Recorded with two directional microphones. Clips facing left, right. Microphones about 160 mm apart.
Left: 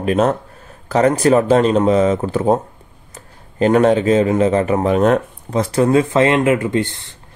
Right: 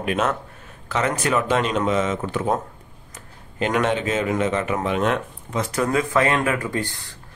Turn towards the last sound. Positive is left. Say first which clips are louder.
# left 8 dB
turn(degrees=25)  # may be behind; listen again after turning